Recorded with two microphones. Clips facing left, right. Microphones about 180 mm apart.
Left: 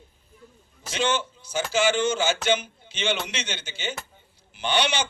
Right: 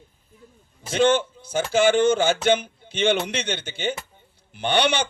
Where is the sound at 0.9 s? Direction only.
55° right (ahead or behind).